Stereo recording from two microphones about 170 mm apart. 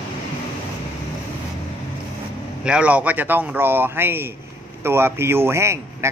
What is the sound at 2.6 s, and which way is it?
Speech, 5° right (ahead or behind).